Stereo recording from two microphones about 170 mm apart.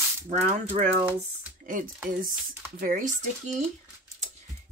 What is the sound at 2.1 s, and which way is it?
Speech, 55° right (ahead or behind).